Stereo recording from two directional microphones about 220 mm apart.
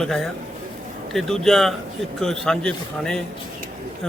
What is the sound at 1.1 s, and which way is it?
A man's voice, centre (ahead or behind).